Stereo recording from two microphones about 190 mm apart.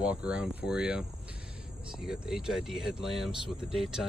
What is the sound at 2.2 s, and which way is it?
Speech, centre (ahead or behind).